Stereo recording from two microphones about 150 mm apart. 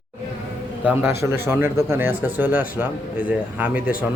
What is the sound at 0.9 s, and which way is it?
Speech, 10° right (ahead or behind).